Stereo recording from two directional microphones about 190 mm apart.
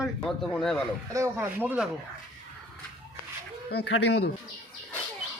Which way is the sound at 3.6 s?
60° left (ahead or behind).